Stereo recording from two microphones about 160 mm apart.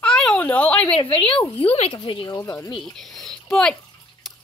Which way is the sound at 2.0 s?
25° left (ahead or behind).